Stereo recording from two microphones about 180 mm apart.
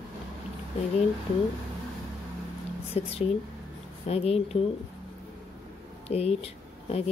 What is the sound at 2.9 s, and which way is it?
A woman's voice, 35° left (ahead or behind).